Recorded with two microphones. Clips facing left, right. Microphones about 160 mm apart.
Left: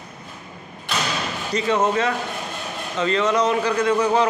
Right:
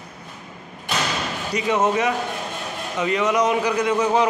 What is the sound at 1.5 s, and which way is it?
A man's voice, 15° right (ahead or behind).